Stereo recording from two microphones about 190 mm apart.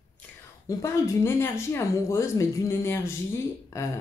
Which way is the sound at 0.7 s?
15° left (ahead or behind).